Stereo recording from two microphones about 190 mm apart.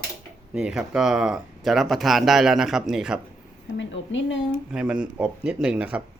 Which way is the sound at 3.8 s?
75° left (ahead or behind).